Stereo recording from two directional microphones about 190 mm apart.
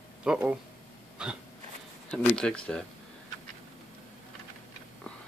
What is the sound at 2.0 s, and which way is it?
Speech, 5° left (ahead or behind).